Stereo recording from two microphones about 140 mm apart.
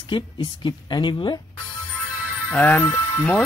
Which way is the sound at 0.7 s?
35° left (ahead or behind).